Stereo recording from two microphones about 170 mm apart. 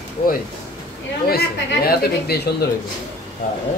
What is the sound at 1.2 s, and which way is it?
Speech, 65° left (ahead or behind).